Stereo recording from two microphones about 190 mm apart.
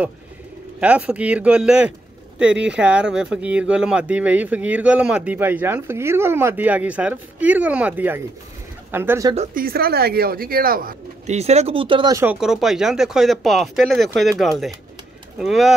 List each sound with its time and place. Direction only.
0.7 s speech: 5° right (ahead or behind)
9.5 s speech: 50° right (ahead or behind)
11.2 s speech: 35° right (ahead or behind)
12.2 s speech: 5° right (ahead or behind)